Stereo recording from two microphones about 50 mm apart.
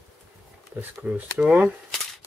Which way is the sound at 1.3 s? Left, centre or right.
Right.